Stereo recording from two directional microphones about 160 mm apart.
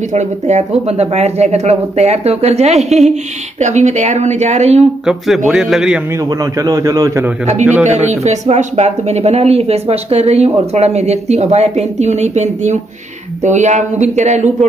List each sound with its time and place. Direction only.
0.1 s speech: 45° right (ahead or behind)
5.0 s a man's voice: centre (ahead or behind)
6.4 s a man's voice: 20° right (ahead or behind)
7.8 s speech: 45° right (ahead or behind)